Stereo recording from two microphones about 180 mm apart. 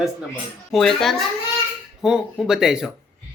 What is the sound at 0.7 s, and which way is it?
Speech, centre (ahead or behind).